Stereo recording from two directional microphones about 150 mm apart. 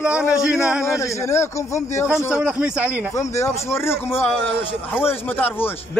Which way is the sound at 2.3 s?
5° right (ahead or behind).